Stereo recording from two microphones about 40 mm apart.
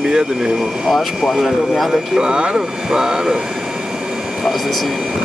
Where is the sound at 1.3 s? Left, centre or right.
Centre.